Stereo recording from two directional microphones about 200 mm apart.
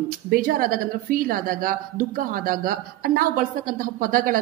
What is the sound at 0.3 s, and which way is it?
A woman's voice, 45° right (ahead or behind).